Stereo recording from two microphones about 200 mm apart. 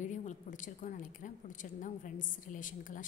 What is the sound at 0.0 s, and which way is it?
A woman's voice, 35° left (ahead or behind).